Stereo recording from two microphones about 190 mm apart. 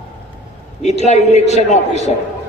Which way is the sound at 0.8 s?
35° left (ahead or behind).